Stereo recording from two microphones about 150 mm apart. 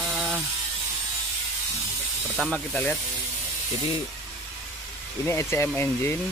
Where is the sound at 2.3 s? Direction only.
5° left (ahead or behind).